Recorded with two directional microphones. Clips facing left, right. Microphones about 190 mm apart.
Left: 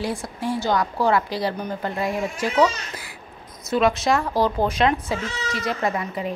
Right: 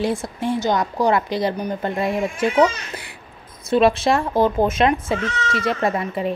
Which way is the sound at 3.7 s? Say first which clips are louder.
Right 3 dB; 30° right (ahead or behind).